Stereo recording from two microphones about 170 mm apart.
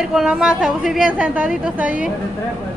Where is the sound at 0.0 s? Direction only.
5° right (ahead or behind).